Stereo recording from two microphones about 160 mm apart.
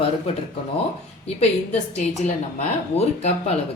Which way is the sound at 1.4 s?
40° left (ahead or behind).